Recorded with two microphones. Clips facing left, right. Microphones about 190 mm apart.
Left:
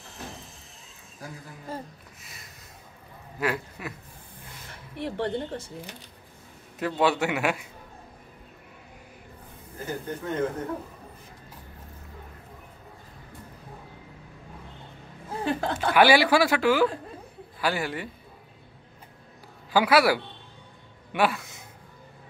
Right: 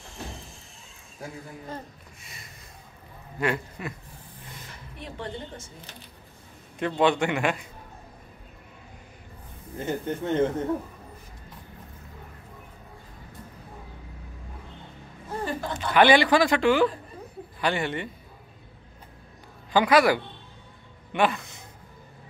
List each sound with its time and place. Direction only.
1.7 s speech: 10° left (ahead or behind)
2.2 s a sound: centre (ahead or behind)
3.3 s a man's voice: 5° left (ahead or behind)
4.9 s a woman's voice: 65° left (ahead or behind)
6.8 s a man's voice: 5° left (ahead or behind)
9.8 s speech: 25° right (ahead or behind)
15.4 s chuckle: 75° left (ahead or behind)
15.9 s a man's voice: 5° left (ahead or behind)
19.7 s speech: 5° left (ahead or behind)